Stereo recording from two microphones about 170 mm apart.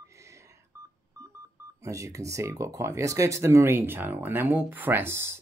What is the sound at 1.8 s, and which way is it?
Speech, 20° right (ahead or behind).